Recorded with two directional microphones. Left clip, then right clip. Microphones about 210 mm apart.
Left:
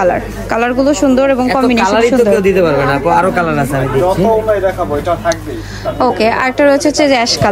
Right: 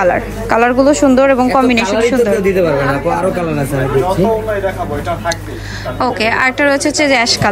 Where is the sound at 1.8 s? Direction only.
20° left (ahead or behind).